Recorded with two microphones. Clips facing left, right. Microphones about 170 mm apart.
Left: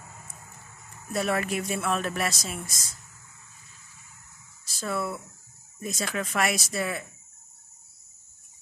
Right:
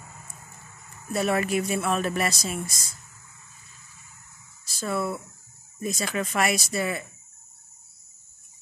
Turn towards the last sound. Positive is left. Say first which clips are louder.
# right 2 dB
turn(degrees=0)  # may be behind; listen again after turning